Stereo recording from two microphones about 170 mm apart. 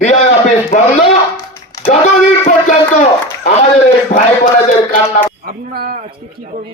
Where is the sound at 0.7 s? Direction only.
50° left (ahead or behind).